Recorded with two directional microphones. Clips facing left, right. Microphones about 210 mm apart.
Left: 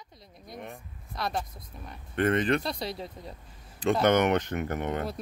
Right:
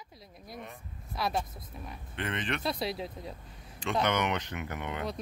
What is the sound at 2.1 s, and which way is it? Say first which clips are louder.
Speech: left 10 dB; 45° left (ahead or behind).